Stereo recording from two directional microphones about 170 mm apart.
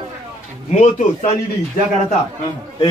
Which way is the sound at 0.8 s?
45° left (ahead or behind).